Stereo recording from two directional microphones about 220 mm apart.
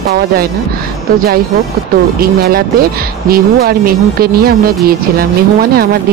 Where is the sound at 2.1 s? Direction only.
45° right (ahead or behind).